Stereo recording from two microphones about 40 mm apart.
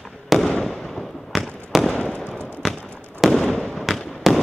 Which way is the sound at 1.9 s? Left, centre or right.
Left.